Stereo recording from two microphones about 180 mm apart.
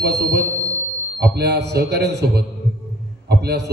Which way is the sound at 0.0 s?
65° right (ahead or behind).